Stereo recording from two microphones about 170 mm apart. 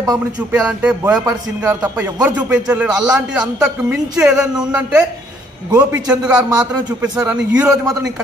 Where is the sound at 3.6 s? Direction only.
10° right (ahead or behind).